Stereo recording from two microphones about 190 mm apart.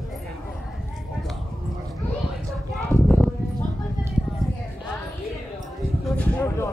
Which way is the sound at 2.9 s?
5° left (ahead or behind).